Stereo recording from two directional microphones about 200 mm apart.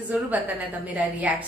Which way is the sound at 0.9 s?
5° right (ahead or behind).